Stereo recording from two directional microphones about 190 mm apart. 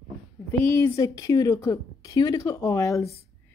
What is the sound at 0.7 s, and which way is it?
Speech, 15° left (ahead or behind).